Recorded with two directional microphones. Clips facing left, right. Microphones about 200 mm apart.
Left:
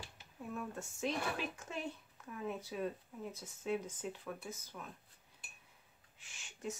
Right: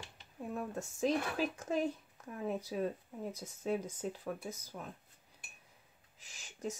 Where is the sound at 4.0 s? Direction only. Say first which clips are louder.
Right 4 dB; 40° right (ahead or behind).